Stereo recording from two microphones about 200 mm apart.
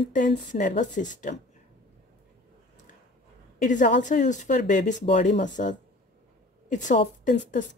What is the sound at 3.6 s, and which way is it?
Speech, 40° left (ahead or behind).